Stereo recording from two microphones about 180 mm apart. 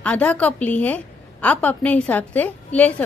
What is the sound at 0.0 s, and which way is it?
A woman's voice, 5° left (ahead or behind).